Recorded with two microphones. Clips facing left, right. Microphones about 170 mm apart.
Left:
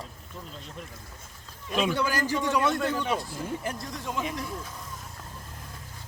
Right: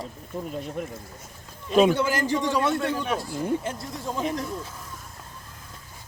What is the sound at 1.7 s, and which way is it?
Speech, 45° right (ahead or behind).